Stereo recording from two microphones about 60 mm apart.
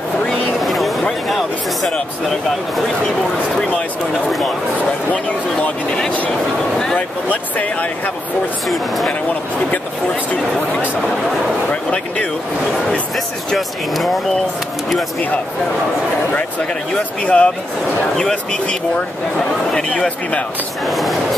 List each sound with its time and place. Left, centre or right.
0.6 s vehicle: centre
1.3 s a sound: centre
5.1 s speech: centre
7.2 s speech: left
8.6 s speech: centre
11.7 s speech: centre
13.1 s speech: centre
16.9 s speech: centre
20.8 s speech: centre